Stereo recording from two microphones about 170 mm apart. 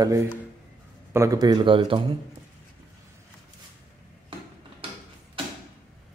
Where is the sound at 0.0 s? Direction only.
15° right (ahead or behind).